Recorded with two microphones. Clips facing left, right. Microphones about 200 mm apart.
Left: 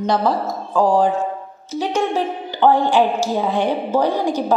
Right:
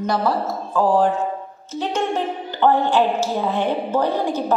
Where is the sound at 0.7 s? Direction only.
15° left (ahead or behind).